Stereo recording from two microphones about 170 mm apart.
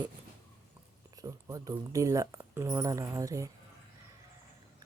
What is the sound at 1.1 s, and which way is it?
Speech, 20° right (ahead or behind).